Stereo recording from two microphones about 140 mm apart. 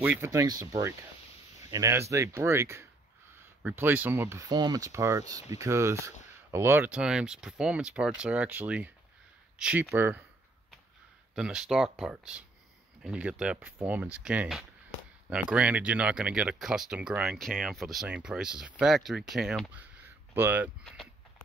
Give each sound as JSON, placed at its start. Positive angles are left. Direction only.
{"t": 0.0, "sound": "speech", "side_deg": -15}
{"t": 4.5, "sound": "speech", "side_deg": -30}
{"t": 11.3, "sound": "speech", "side_deg": -5}
{"t": 20.3, "sound": "speech", "side_deg": -10}
{"t": 20.8, "sound": "a sound", "side_deg": 0}